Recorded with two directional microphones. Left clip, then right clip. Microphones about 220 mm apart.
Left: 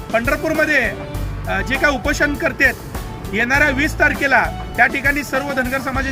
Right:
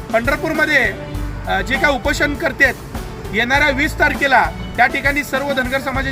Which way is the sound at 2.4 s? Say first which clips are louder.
Right 3 dB; 10° left (ahead or behind).